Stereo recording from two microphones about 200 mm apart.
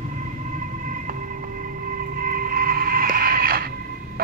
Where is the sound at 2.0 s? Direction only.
45° right (ahead or behind).